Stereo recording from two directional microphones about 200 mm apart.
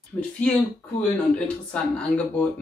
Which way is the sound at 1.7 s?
5° left (ahead or behind).